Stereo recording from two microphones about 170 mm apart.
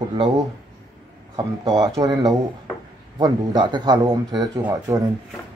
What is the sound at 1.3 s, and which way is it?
A man's voice, 25° right (ahead or behind).